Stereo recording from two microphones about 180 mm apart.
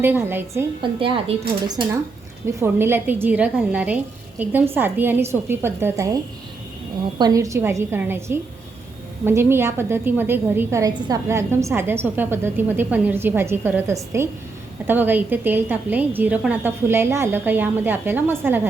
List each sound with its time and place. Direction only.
0.0 s a woman's voice: 10° right (ahead or behind)
0.8 s a woman's voice: 30° right (ahead or behind); by 6.1 s 15° right (ahead or behind)
7.2 s a woman's voice: 20° right (ahead or behind)